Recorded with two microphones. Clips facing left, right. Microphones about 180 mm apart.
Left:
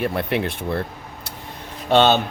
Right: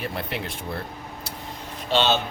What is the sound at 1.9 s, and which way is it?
Speech, 55° left (ahead or behind).